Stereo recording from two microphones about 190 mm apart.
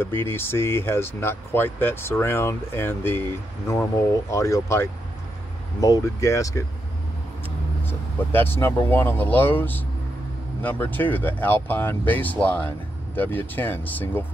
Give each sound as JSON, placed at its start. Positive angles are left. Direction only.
{"t": 0.0, "sound": "speech", "side_deg": 10}
{"t": 4.3, "sound": "speech", "side_deg": 15}
{"t": 8.3, "sound": "speech", "side_deg": 10}